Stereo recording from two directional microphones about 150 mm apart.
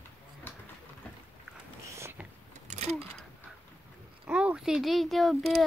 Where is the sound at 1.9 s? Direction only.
15° right (ahead or behind).